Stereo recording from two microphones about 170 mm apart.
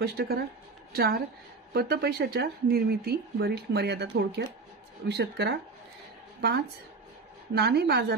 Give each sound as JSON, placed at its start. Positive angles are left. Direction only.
{"t": 0.0, "sound": "a woman's voice", "side_deg": -65}
{"t": 7.5, "sound": "a woman's voice", "side_deg": -75}